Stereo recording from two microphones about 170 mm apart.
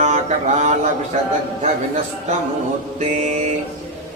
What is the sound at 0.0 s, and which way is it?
Mantra, 45° right (ahead or behind).